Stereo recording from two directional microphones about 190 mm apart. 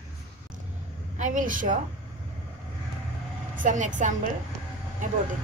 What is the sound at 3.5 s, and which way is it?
Speech, 40° right (ahead or behind).